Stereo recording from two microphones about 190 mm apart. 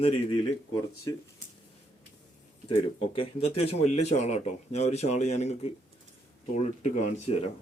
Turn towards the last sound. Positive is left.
turn(degrees=35)  # may be behind; listen again after turning